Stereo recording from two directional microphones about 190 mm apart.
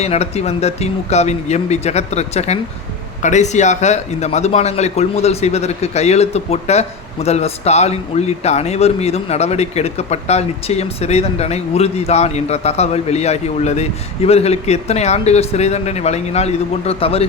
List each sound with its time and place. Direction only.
0.0 s a man's voice: 35° left (ahead or behind)